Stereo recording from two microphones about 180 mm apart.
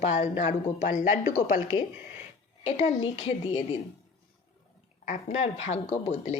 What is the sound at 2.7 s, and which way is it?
A woman's voice, 40° left (ahead or behind).